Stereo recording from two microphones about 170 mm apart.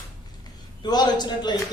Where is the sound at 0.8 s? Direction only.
25° left (ahead or behind).